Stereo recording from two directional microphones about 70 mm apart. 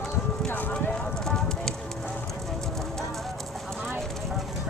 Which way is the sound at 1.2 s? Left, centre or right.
Centre.